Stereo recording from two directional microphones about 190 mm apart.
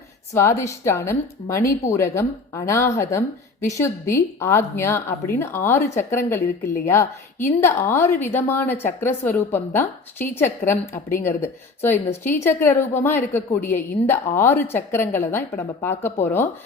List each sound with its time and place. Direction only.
0.3 s a woman's voice: 15° left (ahead or behind)